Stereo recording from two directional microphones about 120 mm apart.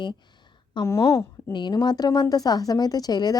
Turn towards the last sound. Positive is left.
turn(degrees=35)  # may be behind; listen again after turning